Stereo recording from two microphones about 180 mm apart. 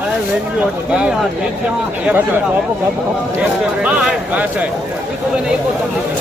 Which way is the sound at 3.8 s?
5° right (ahead or behind).